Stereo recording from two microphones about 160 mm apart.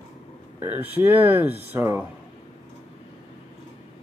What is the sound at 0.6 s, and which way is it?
Speech, 10° right (ahead or behind).